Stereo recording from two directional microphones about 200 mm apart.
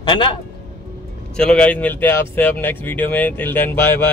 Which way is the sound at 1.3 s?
5° left (ahead or behind).